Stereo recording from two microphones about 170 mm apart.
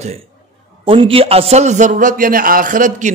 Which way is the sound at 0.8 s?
35° right (ahead or behind).